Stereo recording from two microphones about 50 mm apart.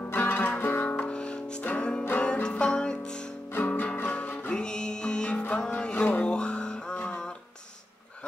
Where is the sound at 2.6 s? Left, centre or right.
Centre.